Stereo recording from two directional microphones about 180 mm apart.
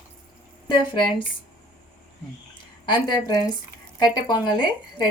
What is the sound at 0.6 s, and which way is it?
Speech, 25° left (ahead or behind).